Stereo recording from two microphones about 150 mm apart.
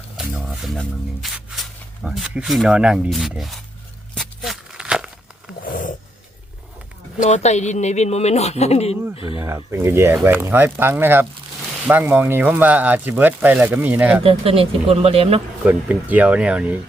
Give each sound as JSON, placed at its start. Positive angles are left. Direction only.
{"t": 0.2, "sound": "speech", "side_deg": -5}
{"t": 4.1, "sound": "walk", "side_deg": 0}
{"t": 5.6, "sound": "a sound", "side_deg": 70}
{"t": 7.2, "sound": "speech", "side_deg": 50}
{"t": 9.7, "sound": "speech", "side_deg": -15}
{"t": 14.3, "sound": "speech", "side_deg": -40}
{"t": 15.6, "sound": "speech", "side_deg": -10}